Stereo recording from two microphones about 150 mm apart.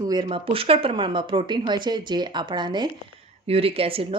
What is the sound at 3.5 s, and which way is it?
Speech, 40° right (ahead or behind).